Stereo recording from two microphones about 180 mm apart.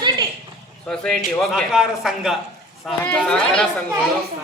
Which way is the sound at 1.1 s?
5° right (ahead or behind).